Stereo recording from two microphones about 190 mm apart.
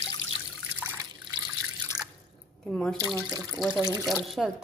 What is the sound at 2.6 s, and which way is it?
Speech, 5° left (ahead or behind).